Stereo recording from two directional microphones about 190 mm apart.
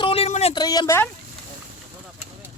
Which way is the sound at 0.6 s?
20° left (ahead or behind).